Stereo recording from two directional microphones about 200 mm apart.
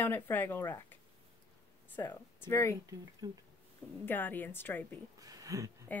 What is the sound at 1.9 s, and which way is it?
Speech, 10° left (ahead or behind).